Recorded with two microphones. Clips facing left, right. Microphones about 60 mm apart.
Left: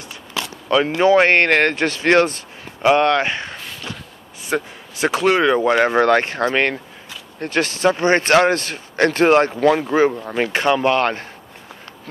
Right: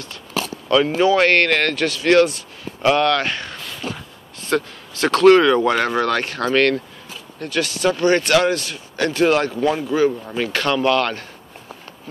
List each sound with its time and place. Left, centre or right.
0.7 s speech: left
2.8 s speech: left
5.9 s speech: left
7.3 s speech: left
10.5 s speech: left